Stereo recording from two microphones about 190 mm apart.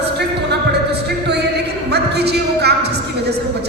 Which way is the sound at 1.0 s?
60° right (ahead or behind).